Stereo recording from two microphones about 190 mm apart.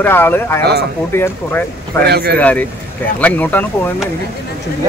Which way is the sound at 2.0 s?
60° right (ahead or behind).